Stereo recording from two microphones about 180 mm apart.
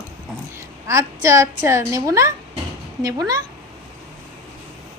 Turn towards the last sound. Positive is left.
turn(degrees=-20)  # may be behind; listen again after turning